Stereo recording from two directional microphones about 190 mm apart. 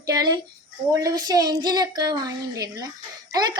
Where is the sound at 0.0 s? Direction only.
20° right (ahead or behind).